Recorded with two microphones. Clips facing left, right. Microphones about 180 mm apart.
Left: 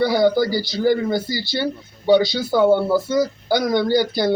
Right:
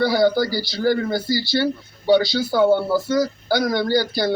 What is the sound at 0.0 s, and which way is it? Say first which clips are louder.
Speech: left 1 dB; 20° left (ahead or behind).